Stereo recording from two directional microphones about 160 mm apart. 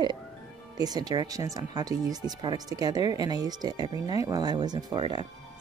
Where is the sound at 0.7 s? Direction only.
25° right (ahead or behind).